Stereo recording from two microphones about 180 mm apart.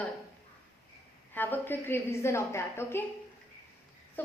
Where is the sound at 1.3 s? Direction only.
10° left (ahead or behind).